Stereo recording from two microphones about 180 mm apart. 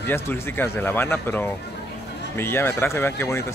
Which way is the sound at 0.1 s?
10° left (ahead or behind).